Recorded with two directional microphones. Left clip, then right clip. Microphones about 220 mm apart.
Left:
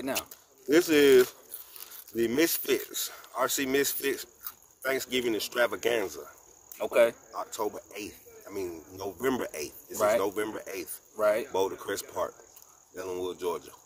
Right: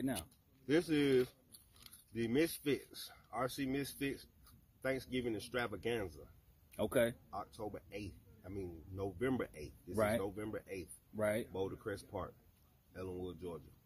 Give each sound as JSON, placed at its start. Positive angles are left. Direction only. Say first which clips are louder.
{"t": 0.7, "sound": "speech", "louder": "left 13 dB", "side_deg": 50}
{"t": 6.9, "sound": "speech", "louder": "left 12 dB", "side_deg": 0}
{"t": 7.5, "sound": "speech", "louder": "left 12 dB", "side_deg": 50}
{"t": 11.1, "sound": "speech", "louder": "left 11 dB", "side_deg": -5}
{"t": 11.5, "sound": "speech", "louder": "left 12 dB", "side_deg": 50}